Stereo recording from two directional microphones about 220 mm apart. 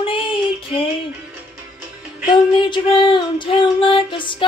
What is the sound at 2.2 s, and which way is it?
Female singing, 20° left (ahead or behind).